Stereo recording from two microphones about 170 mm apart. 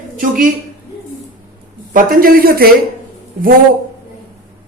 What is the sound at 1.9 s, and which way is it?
Speech, 55° right (ahead or behind).